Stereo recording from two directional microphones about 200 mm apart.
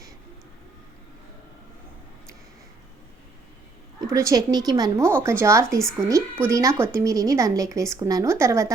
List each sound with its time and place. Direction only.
4.0 s a woman's voice: 15° right (ahead or behind)